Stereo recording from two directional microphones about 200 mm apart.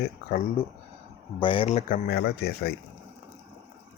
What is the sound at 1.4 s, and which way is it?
Speech, 25° left (ahead or behind).